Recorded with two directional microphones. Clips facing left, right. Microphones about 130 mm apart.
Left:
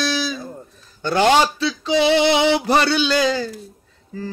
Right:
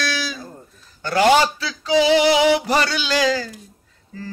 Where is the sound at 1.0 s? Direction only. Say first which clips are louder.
Even; 25° left (ahead or behind).